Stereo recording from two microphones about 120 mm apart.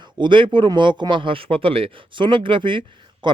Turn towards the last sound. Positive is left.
turn(degrees=-45)  # may be behind; listen again after turning